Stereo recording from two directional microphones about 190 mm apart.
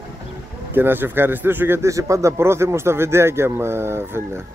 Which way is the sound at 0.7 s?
10° right (ahead or behind).